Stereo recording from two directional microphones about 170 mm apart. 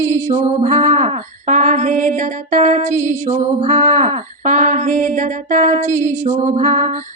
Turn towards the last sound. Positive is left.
turn(degrees=-45)  # may be behind; listen again after turning